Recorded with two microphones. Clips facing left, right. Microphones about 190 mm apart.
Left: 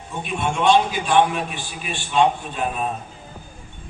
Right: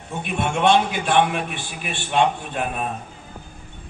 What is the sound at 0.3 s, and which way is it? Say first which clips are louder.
A man's voice: even; 60° right (ahead or behind).